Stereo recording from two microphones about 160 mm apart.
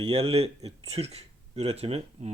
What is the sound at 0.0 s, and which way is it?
Speech, 40° right (ahead or behind).